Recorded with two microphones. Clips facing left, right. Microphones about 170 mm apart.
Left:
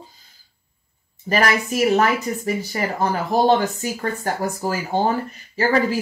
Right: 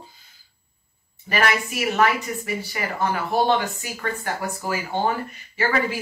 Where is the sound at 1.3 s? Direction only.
40° left (ahead or behind).